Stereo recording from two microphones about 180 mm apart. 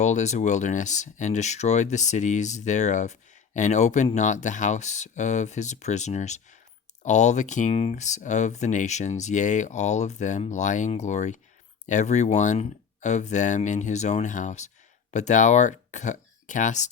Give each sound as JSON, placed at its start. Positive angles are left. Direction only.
{"t": 0.0, "sound": "speech", "side_deg": 40}